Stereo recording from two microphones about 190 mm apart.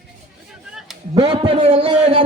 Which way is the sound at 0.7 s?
Centre (ahead or behind).